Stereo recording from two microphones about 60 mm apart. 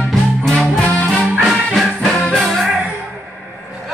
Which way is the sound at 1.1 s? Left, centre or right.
Centre.